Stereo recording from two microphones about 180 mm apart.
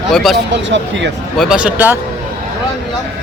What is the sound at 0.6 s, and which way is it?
Speech, 90° right.